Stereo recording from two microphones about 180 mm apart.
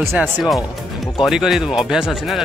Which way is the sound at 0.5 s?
20° left (ahead or behind).